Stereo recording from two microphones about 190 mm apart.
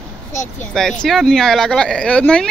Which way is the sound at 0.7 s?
5° left (ahead or behind).